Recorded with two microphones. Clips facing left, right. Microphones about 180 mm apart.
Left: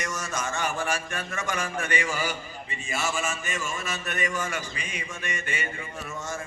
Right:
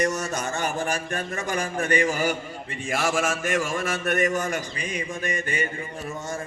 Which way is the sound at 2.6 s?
65° right (ahead or behind).